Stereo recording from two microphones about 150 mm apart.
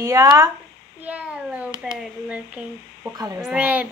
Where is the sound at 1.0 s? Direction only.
5° right (ahead or behind).